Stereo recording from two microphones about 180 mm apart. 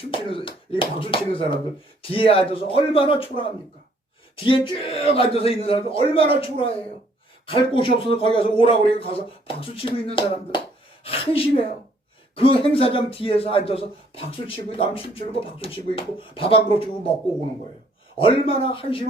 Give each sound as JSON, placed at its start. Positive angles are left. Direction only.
{"t": 0.0, "sound": "speech", "side_deg": 30}
{"t": 4.4, "sound": "a woman's voice", "side_deg": 30}
{"t": 18.2, "sound": "speech", "side_deg": 30}